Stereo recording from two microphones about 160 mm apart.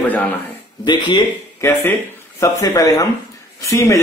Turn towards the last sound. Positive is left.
turn(degrees=20)  # may be behind; listen again after turning